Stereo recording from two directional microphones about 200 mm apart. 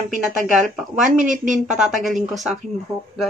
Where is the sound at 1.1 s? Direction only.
40° right (ahead or behind).